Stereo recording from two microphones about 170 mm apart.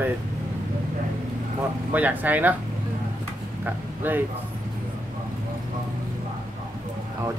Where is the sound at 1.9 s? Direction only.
10° right (ahead or behind).